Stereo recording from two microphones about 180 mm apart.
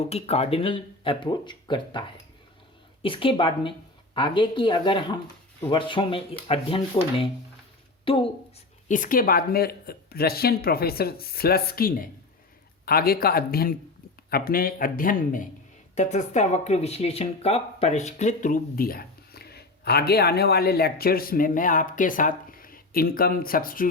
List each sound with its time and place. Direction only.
0.0 s a woman's voice: 35° left (ahead or behind)
8.9 s speech: 50° left (ahead or behind)